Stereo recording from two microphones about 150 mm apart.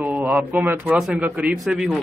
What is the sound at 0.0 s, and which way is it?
A man's voice, 10° right (ahead or behind).